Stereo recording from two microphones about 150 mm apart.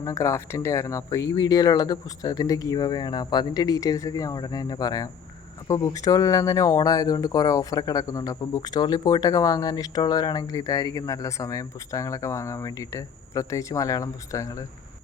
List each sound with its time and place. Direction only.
0.0 s speech: 20° left (ahead or behind)